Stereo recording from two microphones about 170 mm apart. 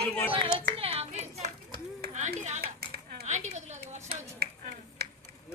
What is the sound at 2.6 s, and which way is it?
Dishes, 65° right (ahead or behind).